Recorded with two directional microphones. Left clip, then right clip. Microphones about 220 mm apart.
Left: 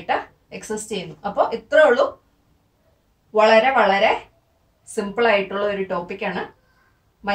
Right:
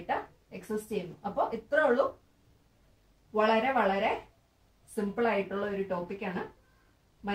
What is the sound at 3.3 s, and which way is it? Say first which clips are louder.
Speech: left 12 dB; 25° left (ahead or behind).